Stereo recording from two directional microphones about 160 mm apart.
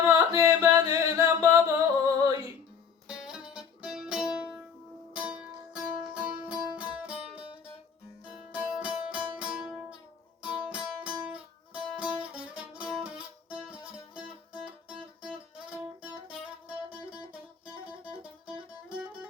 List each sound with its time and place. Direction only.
0.1 s chant: 20° right (ahead or behind)
3.1 s music: 5° right (ahead or behind)
8.4 s music: 5° right (ahead or behind)
16.0 s music: 10° right (ahead or behind)